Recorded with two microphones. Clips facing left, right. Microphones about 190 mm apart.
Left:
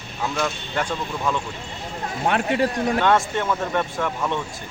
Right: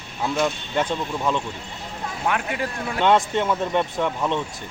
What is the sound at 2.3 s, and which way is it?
Speech, 30° left (ahead or behind).